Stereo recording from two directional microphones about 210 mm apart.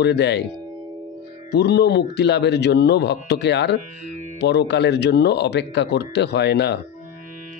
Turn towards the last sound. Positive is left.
turn(degrees=55)  # may be behind; listen again after turning